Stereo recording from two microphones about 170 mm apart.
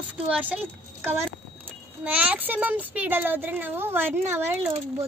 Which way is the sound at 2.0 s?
10° right (ahead or behind).